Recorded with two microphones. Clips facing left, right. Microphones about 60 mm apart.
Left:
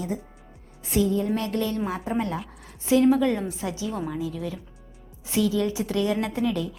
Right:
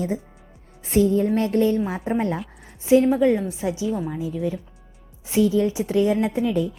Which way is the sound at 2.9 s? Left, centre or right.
Right.